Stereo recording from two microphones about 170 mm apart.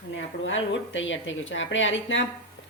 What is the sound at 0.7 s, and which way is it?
Speech, 90° left.